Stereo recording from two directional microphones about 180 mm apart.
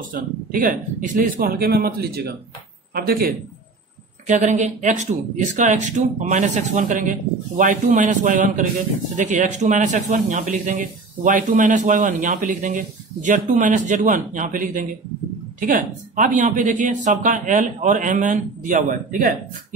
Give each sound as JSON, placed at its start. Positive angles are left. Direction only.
{"t": 0.0, "sound": "speech", "side_deg": -50}
{"t": 4.3, "sound": "speech", "side_deg": -40}